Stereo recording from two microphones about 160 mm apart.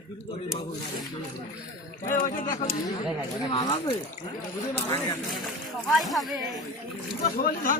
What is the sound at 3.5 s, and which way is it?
Speech, 30° left (ahead or behind).